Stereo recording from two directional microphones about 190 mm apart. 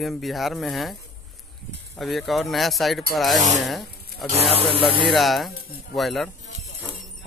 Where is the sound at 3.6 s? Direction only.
Centre (ahead or behind).